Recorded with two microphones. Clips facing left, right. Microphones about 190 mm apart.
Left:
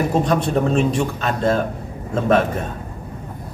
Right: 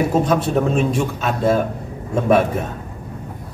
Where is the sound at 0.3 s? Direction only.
5° right (ahead or behind).